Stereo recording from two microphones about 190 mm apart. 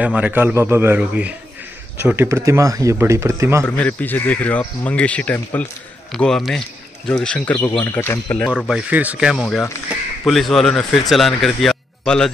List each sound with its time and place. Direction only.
0.0 s speech: 10° right (ahead or behind)
3.6 s speech: 5° left (ahead or behind)
8.5 s speech: 5° right (ahead or behind)